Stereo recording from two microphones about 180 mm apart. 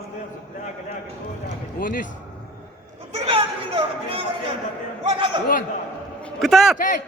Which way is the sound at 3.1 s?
30° right (ahead or behind).